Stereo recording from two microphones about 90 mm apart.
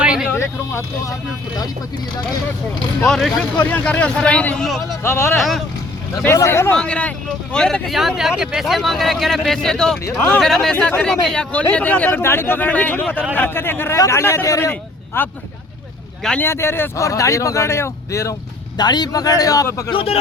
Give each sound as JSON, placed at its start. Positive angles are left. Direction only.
{"t": 0.0, "sound": "vehicle", "side_deg": -10}
{"t": 0.3, "sound": "speech", "side_deg": 30}
{"t": 3.1, "sound": "speech", "side_deg": 5}
{"t": 3.6, "sound": "speech", "side_deg": 20}
{"t": 4.6, "sound": "speech", "side_deg": 0}
{"t": 5.0, "sound": "speech", "side_deg": 25}
{"t": 5.4, "sound": "speech", "side_deg": 0}
{"t": 6.2, "sound": "speech", "side_deg": 30}
{"t": 6.7, "sound": "speech", "side_deg": 10}
{"t": 7.9, "sound": "speech", "side_deg": -5}
{"t": 15.1, "sound": "speech", "side_deg": 25}
{"t": 16.4, "sound": "speech", "side_deg": 30}
{"t": 18.8, "sound": "a man's voice", "side_deg": 50}
{"t": 19.9, "sound": "speech", "side_deg": 90}